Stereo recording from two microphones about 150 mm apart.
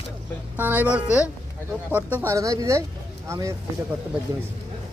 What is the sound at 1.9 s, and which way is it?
Speech, 10° right (ahead or behind).